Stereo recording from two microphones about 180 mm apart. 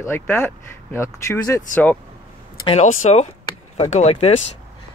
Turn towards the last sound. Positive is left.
turn(degrees=35)  # may be behind; listen again after turning